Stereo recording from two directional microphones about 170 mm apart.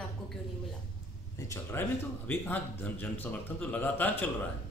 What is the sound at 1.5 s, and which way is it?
A man's voice, 15° left (ahead or behind).